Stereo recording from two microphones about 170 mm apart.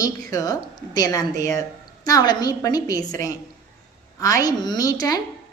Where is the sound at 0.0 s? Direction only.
20° left (ahead or behind).